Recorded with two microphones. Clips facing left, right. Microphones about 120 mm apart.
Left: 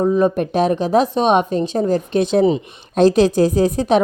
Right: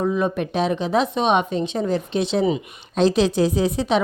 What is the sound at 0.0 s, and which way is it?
Speech, 30° left (ahead or behind).